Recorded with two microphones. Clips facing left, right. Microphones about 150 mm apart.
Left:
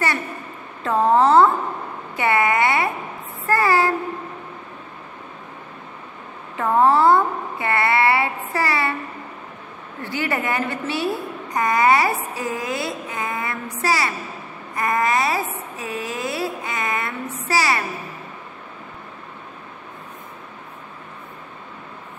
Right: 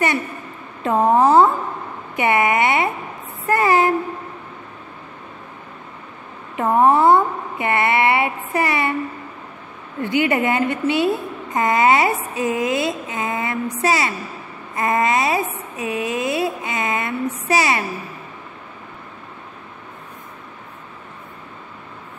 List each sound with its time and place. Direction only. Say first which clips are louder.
0.8 s a woman's voice: right 1 dB; 20° right (ahead or behind)
6.5 s a woman's voice: right 2 dB; 20° right (ahead or behind)
10.0 s a woman's voice: right 6 dB; 20° right (ahead or behind)